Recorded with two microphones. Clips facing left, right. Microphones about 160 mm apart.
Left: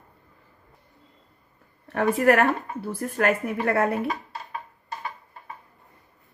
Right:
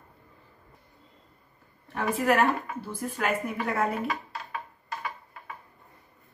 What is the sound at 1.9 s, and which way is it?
A woman's voice, 60° left (ahead or behind).